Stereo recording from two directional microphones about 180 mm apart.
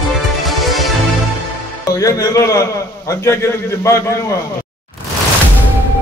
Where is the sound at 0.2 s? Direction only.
Centre (ahead or behind).